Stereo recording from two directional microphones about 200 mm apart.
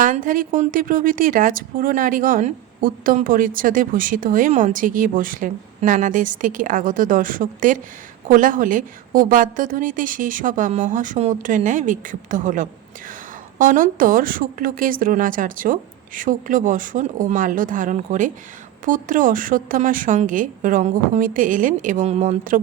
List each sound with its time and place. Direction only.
0.0 s a woman's voice: 40° right (ahead or behind)